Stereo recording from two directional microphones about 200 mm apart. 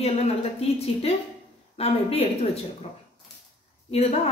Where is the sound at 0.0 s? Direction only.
30° left (ahead or behind).